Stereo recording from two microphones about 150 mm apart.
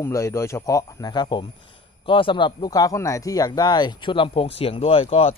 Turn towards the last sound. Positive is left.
turn(degrees=40)  # may be behind; listen again after turning